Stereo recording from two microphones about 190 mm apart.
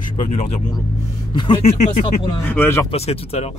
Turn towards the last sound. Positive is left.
turn(degrees=35)  # may be behind; listen again after turning